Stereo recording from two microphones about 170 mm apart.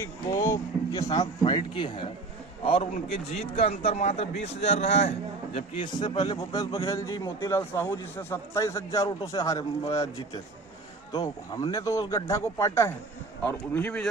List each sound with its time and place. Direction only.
0.0 s a man's voice: 15° left (ahead or behind); by 5.1 s 40° left (ahead or behind)
5.5 s a man's voice: 30° left (ahead or behind)
11.1 s a man's voice: 20° left (ahead or behind)